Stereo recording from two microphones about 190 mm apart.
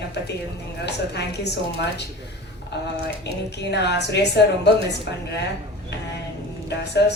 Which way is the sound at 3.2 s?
60° left (ahead or behind).